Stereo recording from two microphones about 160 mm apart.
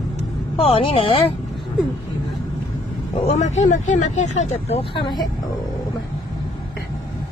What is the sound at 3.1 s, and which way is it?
Speech, 45° left (ahead or behind).